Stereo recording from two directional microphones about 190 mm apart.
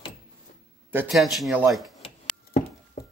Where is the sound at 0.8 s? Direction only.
10° right (ahead or behind).